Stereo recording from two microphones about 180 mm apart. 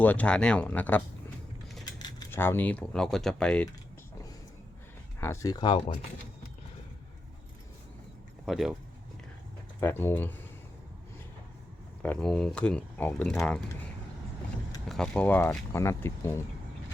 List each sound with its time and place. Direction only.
0.0 s speech: 10° left (ahead or behind)
1.8 s speech: 20° left (ahead or behind); by 3.7 s 5° left (ahead or behind)
5.2 s speech: 15° left (ahead or behind)
8.4 s speech: centre (ahead or behind)
9.8 s speech: 10° left (ahead or behind)
12.0 s speech: 5° left (ahead or behind)
14.8 s speech: 5° left (ahead or behind)